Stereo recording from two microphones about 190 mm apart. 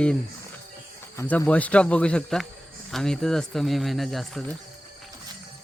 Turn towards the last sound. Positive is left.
turn(degrees=0)  # may be behind; listen again after turning